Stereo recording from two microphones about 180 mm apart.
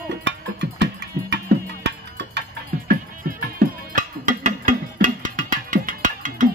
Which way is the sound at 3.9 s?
45° right (ahead or behind).